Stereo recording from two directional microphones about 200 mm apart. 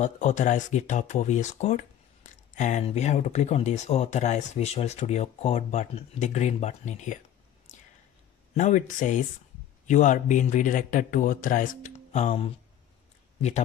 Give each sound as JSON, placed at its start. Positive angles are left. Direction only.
{"t": 0.0, "sound": "speech", "side_deg": 35}
{"t": 8.5, "sound": "speech", "side_deg": 35}